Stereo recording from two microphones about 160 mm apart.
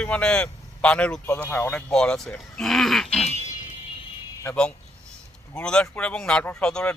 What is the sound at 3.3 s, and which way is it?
Music, 45° left (ahead or behind).